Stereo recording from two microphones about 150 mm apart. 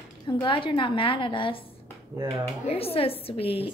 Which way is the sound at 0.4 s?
35° left (ahead or behind).